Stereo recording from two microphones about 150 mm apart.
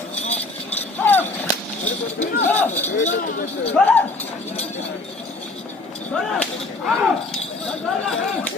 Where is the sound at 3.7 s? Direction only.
10° left (ahead or behind).